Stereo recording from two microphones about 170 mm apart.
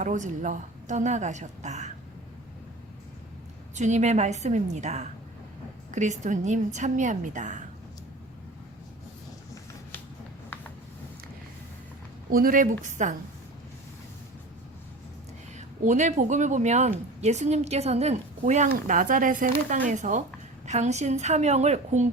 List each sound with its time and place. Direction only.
0.0 s speech: 45° right (ahead or behind)
3.8 s speech: 45° right (ahead or behind)
12.3 s speech: 55° right (ahead or behind)
15.5 s a woman's voice: 45° right (ahead or behind)